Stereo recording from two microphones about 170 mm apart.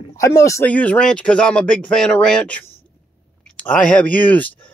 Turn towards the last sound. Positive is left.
turn(degrees=10)  # may be behind; listen again after turning